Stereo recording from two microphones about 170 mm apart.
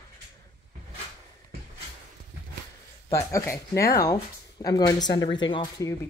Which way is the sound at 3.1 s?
15° left (ahead or behind).